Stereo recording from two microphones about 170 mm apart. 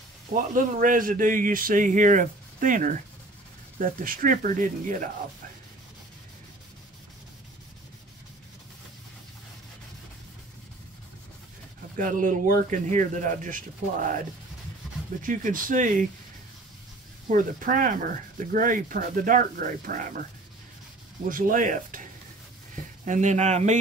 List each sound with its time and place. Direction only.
0.3 s speech: 50° right (ahead or behind)
12.0 s speech: 50° right (ahead or behind)
15.2 s speech: 50° right (ahead or behind)
17.3 s speech: 50° right (ahead or behind)
21.3 s speech: 55° right (ahead or behind)
23.0 s speech: 45° right (ahead or behind)